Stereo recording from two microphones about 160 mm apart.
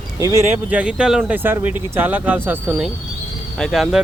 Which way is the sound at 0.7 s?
5° right (ahead or behind).